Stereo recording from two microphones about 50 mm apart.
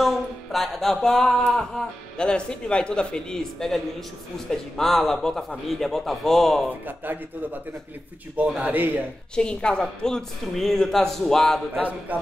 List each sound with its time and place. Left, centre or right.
0.0 s a sound: centre
1.6 s a man's voice: centre
6.7 s speech: right
8.5 s speech: right
9.3 s speech: centre
12.1 s music: right